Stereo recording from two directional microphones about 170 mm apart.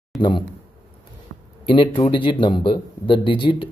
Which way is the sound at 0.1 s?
Centre (ahead or behind).